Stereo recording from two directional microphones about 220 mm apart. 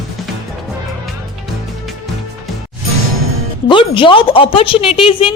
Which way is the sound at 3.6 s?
20° left (ahead or behind).